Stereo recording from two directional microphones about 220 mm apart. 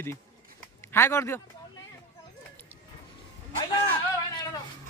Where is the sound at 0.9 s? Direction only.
10° left (ahead or behind).